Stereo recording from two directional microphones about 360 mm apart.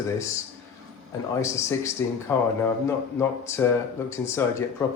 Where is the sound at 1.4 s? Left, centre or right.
Centre.